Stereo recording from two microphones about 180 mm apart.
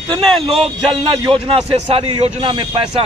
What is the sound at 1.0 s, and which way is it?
A man's voice, 25° right (ahead or behind).